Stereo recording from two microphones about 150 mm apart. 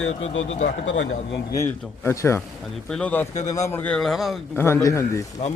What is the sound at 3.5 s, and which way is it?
Speech, 20° left (ahead or behind).